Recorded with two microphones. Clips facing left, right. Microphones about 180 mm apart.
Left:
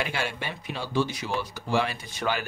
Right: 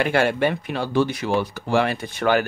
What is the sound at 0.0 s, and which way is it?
Speech, 60° right (ahead or behind).